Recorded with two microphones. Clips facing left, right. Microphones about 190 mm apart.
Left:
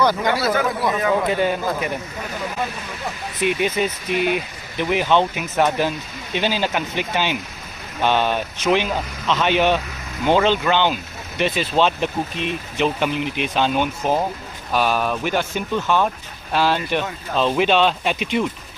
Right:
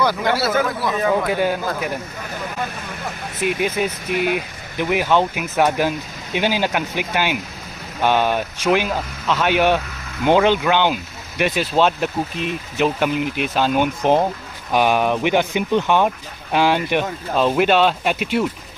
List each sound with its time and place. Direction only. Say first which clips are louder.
0.2 s speech: right 1 dB; 5° right (ahead or behind)
3.4 s speech: even; 5° right (ahead or behind)